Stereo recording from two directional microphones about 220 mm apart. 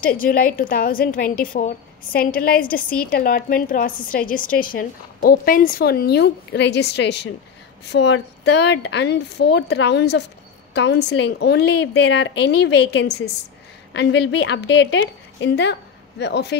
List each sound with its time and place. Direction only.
0.0 s a woman's voice: 40° left (ahead or behind)